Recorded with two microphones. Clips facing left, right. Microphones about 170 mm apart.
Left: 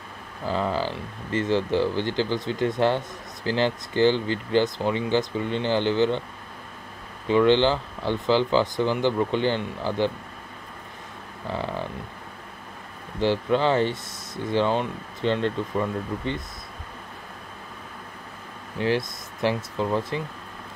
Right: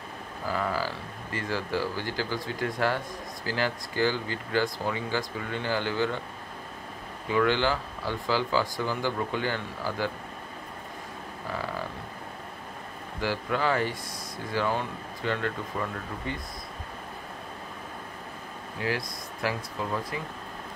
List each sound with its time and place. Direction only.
0.5 s speech: 25° left (ahead or behind)
7.2 s speech: 25° left (ahead or behind)
13.2 s speech: 25° left (ahead or behind)
18.8 s speech: 25° left (ahead or behind)